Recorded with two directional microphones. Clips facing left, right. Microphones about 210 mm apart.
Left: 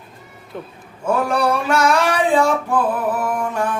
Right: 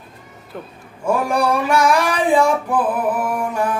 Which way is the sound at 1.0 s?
10° right (ahead or behind).